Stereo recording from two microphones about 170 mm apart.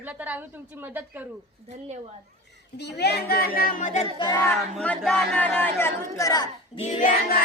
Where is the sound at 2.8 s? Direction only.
75° left (ahead or behind); by 4.1 s 45° left (ahead or behind).